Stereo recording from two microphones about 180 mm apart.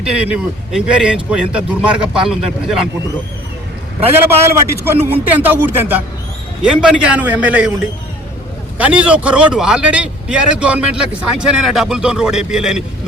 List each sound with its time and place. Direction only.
0.0 s a man's voice: 5° right (ahead or behind)
4.4 s a man's voice: 15° right (ahead or behind)
8.8 s a man's voice: 5° right (ahead or behind)